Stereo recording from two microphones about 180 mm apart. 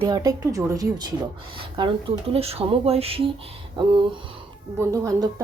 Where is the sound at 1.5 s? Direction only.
30° right (ahead or behind).